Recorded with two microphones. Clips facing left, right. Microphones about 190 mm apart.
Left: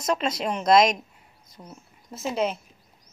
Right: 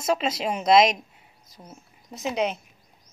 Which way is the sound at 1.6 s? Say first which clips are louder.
Left 1 dB; 15° right (ahead or behind).